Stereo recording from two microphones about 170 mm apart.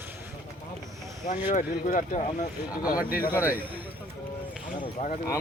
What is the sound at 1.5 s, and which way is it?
Speech, 50° left (ahead or behind).